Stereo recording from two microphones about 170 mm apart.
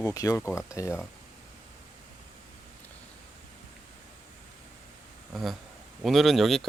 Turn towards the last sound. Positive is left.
turn(degrees=0)  # may be behind; listen again after turning